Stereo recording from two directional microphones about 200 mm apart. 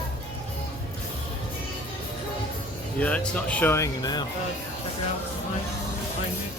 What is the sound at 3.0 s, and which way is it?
Speech, 5° left (ahead or behind).